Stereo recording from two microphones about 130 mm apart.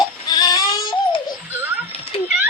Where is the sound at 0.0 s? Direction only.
30° left (ahead or behind).